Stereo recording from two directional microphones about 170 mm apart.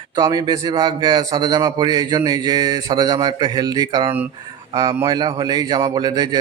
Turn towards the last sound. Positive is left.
turn(degrees=-25)  # may be behind; listen again after turning